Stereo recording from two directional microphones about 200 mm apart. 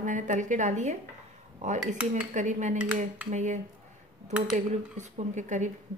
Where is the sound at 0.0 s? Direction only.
40° right (ahead or behind).